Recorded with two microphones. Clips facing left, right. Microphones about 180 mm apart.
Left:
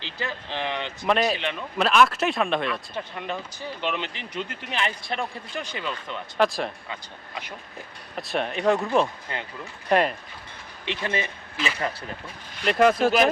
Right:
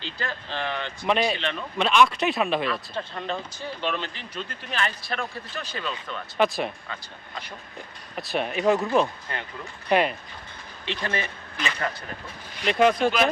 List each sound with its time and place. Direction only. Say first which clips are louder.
0.2 s speech: left 1 dB; 15° left (ahead or behind)
1.0 s speech: left 1 dB; centre (ahead or behind)
1.4 s speech: even; 15° left (ahead or behind)
1.8 s speech: even; centre (ahead or behind)
2.9 s speech: right 1 dB; 15° left (ahead or behind)
6.3 s speech: even; centre (ahead or behind)
8.1 s speech: even; centre (ahead or behind)
9.3 s speech: left 1 dB; 20° left (ahead or behind)
9.9 s speech: left 1 dB; centre (ahead or behind)
10.8 s speech: left 1 dB; 20° left (ahead or behind)
12.6 s speech: left 1 dB; centre (ahead or behind)